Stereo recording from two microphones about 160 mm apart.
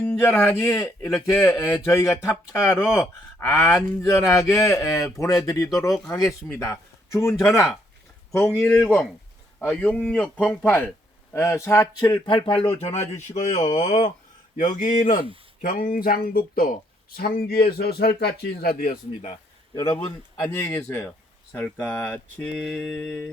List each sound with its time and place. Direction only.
0.0 s a man's voice: 10° left (ahead or behind)
8.9 s a man's voice: 5° left (ahead or behind); by 18.9 s 70° left (ahead or behind)
19.7 s a man's voice: 35° left (ahead or behind)
20.3 s a man's voice: 20° left (ahead or behind)